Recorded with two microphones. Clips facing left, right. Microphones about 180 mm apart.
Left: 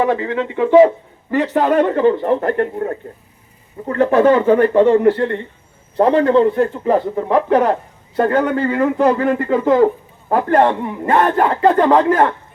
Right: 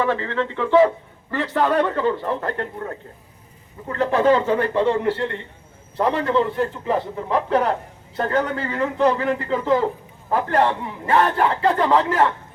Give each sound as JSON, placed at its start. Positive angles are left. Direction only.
{"t": 0.0, "sound": "speech", "side_deg": 15}
{"t": 1.5, "sound": "a man's voice", "side_deg": 45}